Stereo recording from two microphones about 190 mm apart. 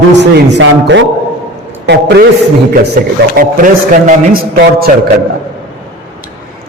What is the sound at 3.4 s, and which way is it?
A man's voice, 45° right (ahead or behind).